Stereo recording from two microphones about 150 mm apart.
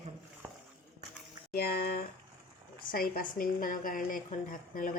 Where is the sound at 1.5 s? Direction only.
90° left.